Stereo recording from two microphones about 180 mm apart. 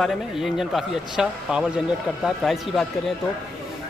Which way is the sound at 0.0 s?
Centre (ahead or behind).